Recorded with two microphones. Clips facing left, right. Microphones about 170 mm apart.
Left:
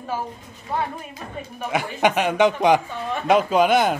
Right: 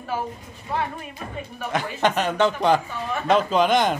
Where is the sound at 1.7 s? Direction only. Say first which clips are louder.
Left 2 dB; 10° left (ahead or behind).